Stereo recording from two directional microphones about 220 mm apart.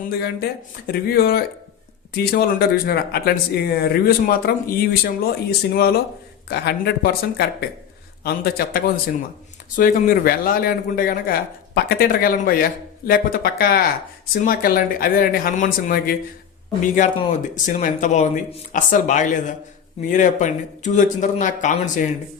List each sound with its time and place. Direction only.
0.1 s a man's voice: 45° left (ahead or behind)